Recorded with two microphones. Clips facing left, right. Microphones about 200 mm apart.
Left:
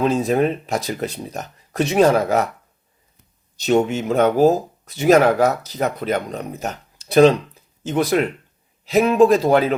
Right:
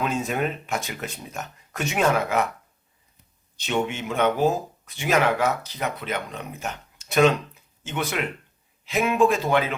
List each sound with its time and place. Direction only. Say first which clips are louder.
0.0 s speech: left 8 dB; 35° left (ahead or behind)
3.6 s speech: left 8 dB; 40° left (ahead or behind)